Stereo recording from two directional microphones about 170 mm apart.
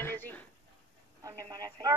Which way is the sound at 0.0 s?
10° left (ahead or behind).